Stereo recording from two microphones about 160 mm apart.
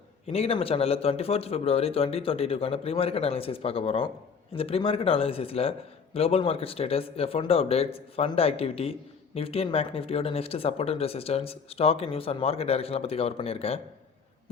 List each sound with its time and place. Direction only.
0.3 s speech: 35° left (ahead or behind)